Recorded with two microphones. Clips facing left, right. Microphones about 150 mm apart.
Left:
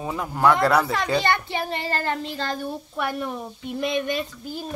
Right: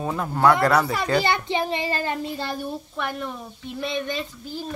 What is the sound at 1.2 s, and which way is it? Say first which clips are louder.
A child's voice: right 3 dB; 15° right (ahead or behind).